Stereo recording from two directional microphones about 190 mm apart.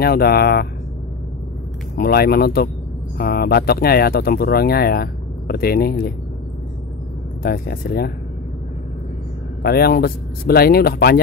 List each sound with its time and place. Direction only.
0.0 s speech: 55° left (ahead or behind)
2.0 s speech: 55° left (ahead or behind)
7.4 s speech: 50° left (ahead or behind)
9.6 s speech: 55° left (ahead or behind)